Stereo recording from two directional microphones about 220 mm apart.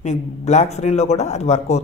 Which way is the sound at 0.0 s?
30° left (ahead or behind).